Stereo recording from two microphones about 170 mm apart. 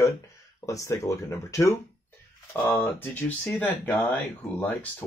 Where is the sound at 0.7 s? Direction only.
20° left (ahead or behind).